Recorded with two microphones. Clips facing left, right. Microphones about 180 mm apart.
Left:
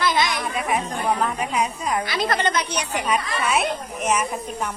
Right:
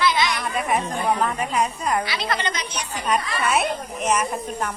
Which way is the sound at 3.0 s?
Centre (ahead or behind).